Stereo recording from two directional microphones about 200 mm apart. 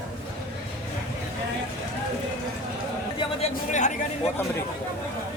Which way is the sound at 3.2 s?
35° left (ahead or behind).